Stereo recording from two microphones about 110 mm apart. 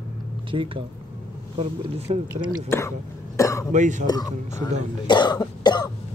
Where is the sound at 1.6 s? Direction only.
70° right (ahead or behind).